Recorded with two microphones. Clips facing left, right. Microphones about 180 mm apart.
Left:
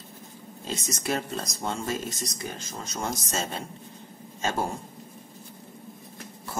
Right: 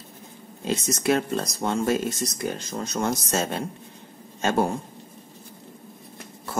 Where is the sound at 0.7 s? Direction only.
65° right (ahead or behind).